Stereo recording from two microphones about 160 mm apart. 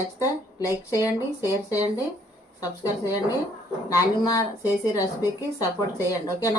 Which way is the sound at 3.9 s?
20° left (ahead or behind).